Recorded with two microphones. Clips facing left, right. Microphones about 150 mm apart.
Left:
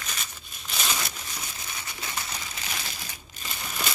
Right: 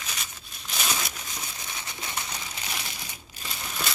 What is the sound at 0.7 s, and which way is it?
Crumpling, 5° right (ahead or behind).